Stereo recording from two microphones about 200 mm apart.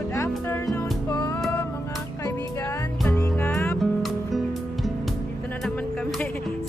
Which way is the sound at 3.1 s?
10° left (ahead or behind).